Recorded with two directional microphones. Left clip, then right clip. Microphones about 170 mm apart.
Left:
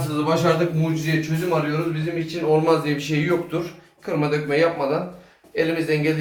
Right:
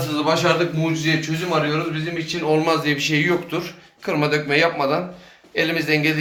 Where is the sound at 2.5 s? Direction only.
5° right (ahead or behind).